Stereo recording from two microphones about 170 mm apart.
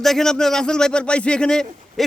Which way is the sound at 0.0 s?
Centre (ahead or behind).